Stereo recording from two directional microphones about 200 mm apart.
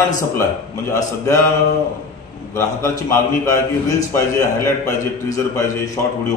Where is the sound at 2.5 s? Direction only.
15° left (ahead or behind).